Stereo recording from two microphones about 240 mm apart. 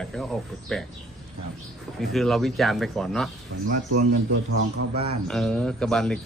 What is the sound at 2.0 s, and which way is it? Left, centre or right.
Speech, centre.